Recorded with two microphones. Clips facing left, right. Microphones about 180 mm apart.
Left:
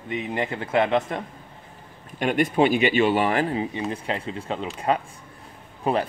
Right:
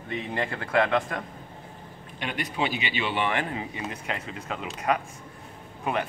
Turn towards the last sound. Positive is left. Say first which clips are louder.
# left 5 dB
turn(degrees=35)  # may be behind; listen again after turning